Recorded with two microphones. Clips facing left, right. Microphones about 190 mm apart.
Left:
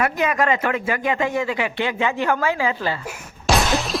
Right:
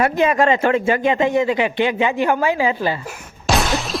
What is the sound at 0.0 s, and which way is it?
Speech, 30° right (ahead or behind).